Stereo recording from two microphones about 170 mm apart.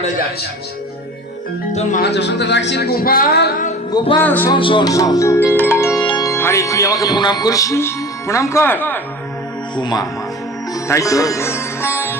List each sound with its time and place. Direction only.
2.0 s speech: 90° left; by 3.5 s 65° left (ahead or behind)
3.9 s music: 30° left (ahead or behind)
4.2 s music: 10° left (ahead or behind)
4.5 s music: 30° left (ahead or behind)
6.1 s speech: 20° left (ahead or behind)
9.7 s music: 25° left (ahead or behind)
10.8 s sitar: 15° left (ahead or behind)